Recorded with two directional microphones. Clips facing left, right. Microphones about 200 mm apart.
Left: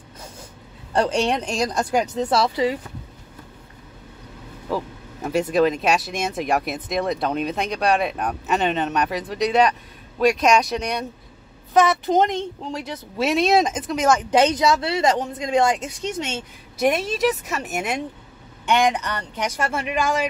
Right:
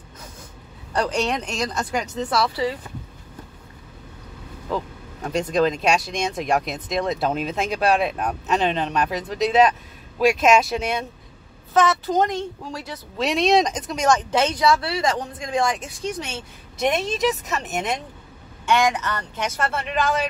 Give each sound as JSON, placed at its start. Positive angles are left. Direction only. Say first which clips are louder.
{"t": 0.9, "sound": "speech", "louder": "left 3 dB", "side_deg": 25}
{"t": 2.4, "sound": "speech", "louder": "left 3 dB", "side_deg": 15}
{"t": 4.6, "sound": "speech", "louder": "left 1 dB", "side_deg": 5}
{"t": 11.7, "sound": "speech", "louder": "left 2 dB", "side_deg": 15}
{"t": 13.2, "sound": "speech", "louder": "left 1 dB", "side_deg": 0}
{"t": 14.3, "sound": "speech", "louder": "left 2 dB", "side_deg": 20}
{"t": 16.8, "sound": "speech", "louder": "left 2 dB", "side_deg": 5}
{"t": 18.7, "sound": "speech", "louder": "left 1 dB", "side_deg": 20}